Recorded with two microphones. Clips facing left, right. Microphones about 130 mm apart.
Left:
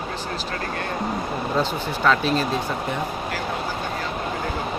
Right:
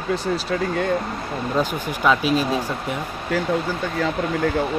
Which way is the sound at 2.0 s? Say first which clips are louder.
Right 2 dB; 10° right (ahead or behind).